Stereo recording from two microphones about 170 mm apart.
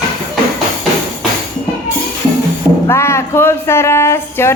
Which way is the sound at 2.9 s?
15° left (ahead or behind).